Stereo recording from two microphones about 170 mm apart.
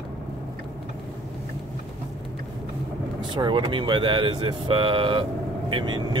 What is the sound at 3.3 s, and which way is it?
Speech, 30° right (ahead or behind).